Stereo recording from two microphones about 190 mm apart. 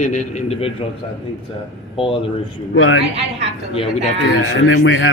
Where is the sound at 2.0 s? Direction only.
30° left (ahead or behind).